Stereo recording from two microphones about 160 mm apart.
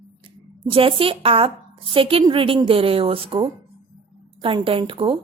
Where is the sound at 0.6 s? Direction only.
35° right (ahead or behind).